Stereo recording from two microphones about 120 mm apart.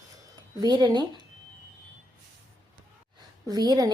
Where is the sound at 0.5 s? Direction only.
35° right (ahead or behind).